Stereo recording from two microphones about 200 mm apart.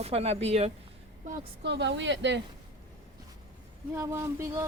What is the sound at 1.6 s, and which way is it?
Speech, 60° right (ahead or behind).